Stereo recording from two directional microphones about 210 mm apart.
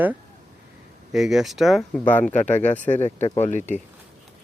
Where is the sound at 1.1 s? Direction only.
Centre (ahead or behind).